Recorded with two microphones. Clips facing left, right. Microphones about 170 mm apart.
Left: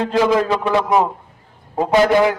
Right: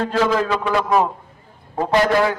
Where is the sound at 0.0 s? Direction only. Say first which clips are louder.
Left 3 dB; 15° left (ahead or behind).